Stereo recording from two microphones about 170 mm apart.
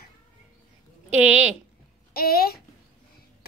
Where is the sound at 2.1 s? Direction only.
65° left (ahead or behind).